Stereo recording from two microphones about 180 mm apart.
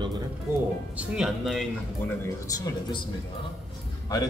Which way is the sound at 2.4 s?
20° left (ahead or behind).